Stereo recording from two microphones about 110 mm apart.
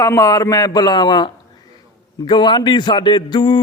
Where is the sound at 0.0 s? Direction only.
30° left (ahead or behind).